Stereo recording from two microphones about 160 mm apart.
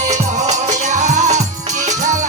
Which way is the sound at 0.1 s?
45° right (ahead or behind).